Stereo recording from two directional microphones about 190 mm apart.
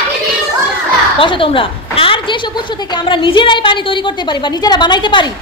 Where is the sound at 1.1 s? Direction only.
25° left (ahead or behind).